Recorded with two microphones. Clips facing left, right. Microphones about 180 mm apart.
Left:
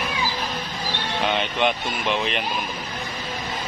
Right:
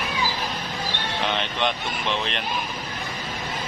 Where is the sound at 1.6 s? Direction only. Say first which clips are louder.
Left 3 dB; 10° left (ahead or behind).